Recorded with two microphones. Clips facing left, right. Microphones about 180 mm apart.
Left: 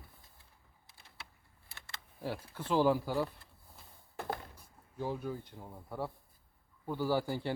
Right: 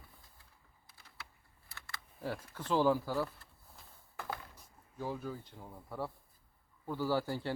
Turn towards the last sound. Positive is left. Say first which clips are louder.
# left 1 dB
turn(degrees=15)  # may be behind; listen again after turning